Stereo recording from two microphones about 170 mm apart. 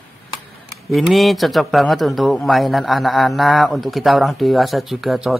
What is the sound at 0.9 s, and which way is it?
A man's voice, centre (ahead or behind).